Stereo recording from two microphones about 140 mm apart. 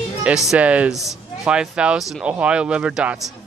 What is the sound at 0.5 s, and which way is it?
Speech, 10° right (ahead or behind).